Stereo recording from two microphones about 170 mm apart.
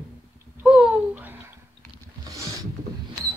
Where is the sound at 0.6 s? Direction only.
5° right (ahead or behind).